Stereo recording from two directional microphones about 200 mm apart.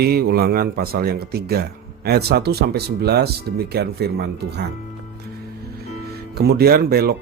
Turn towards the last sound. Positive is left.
turn(degrees=-50)  # may be behind; listen again after turning